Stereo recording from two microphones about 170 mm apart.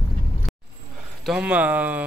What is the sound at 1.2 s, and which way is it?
Speech, 5° right (ahead or behind).